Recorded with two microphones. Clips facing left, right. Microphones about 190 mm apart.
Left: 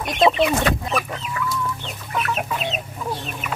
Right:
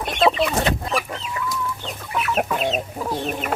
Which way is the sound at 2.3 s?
45° right (ahead or behind).